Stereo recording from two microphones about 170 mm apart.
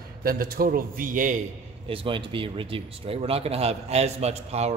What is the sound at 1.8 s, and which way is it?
Speech, 30° right (ahead or behind).